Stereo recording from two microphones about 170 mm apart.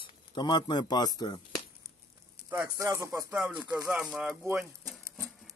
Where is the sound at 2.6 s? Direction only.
20° right (ahead or behind); by 4.4 s 5° right (ahead or behind).